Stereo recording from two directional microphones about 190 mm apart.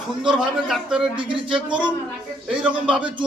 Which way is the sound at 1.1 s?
25° right (ahead or behind).